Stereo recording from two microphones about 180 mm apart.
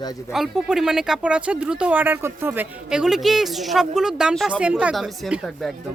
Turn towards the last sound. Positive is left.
turn(degrees=0)  # may be behind; listen again after turning